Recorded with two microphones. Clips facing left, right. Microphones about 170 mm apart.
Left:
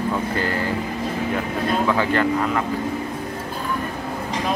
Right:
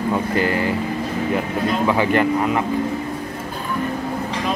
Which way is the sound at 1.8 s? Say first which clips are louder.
Right 4 dB; 15° right (ahead or behind).